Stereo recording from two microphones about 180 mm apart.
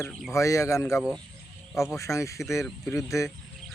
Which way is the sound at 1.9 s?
15° left (ahead or behind).